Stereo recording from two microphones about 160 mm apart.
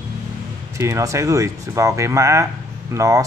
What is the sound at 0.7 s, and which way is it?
Speech, 20° right (ahead or behind).